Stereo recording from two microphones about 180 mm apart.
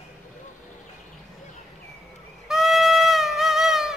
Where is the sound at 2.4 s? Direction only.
Centre (ahead or behind).